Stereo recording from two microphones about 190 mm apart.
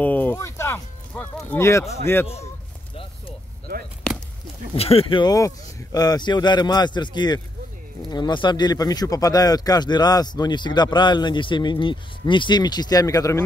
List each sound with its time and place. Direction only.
0.0 s a man's voice: 10° left (ahead or behind)
4.7 s speech: 30° left (ahead or behind)